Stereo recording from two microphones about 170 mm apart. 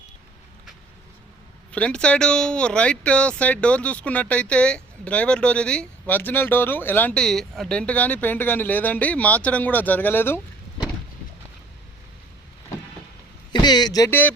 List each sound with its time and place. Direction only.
1.7 s speech: 5° left (ahead or behind)
13.5 s speech: 25° left (ahead or behind)